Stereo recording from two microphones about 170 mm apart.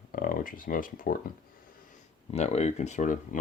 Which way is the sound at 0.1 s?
55° left (ahead or behind).